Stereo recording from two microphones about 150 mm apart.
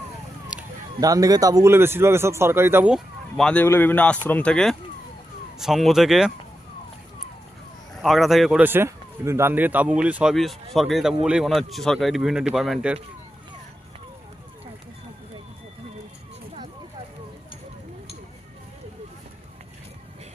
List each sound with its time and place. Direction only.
0.5 s a sound: 5° right (ahead or behind)
1.0 s speech: 25° right (ahead or behind)
2.9 s speech: 5° left (ahead or behind)
7.9 s speech: centre (ahead or behind)